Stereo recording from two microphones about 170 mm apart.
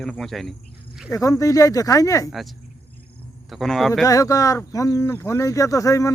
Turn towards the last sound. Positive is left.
turn(degrees=20)  # may be behind; listen again after turning